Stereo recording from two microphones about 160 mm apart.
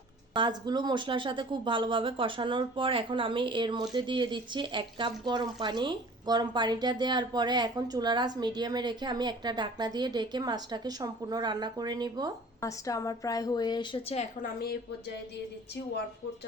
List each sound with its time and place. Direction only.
0.3 s speech: 30° right (ahead or behind)
12.6 s a woman's voice: 20° left (ahead or behind); by 14.3 s 35° left (ahead or behind)
14.4 s a woman's voice: 70° left (ahead or behind)